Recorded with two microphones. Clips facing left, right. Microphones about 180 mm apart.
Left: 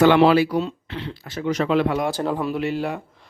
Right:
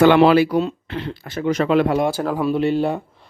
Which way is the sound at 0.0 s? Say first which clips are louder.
Right 2 dB; 55° right (ahead or behind).